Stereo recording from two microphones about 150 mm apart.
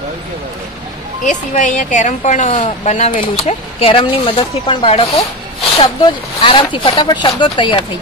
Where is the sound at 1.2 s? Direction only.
55° left (ahead or behind).